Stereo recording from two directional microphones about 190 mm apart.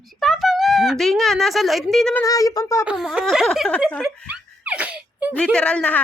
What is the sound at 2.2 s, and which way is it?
Speech, 20° left (ahead or behind).